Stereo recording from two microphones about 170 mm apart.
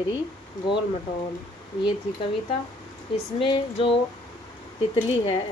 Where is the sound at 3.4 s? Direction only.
30° left (ahead or behind).